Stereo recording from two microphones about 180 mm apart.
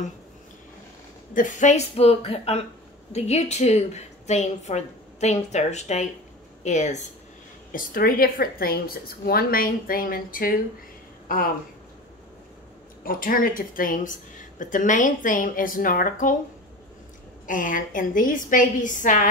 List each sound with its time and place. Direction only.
1.3 s a woman's voice: 45° left (ahead or behind)
7.7 s a woman's voice: 55° left (ahead or behind)
13.0 s a woman's voice: 50° left (ahead or behind)
17.5 s a woman's voice: 45° left (ahead or behind)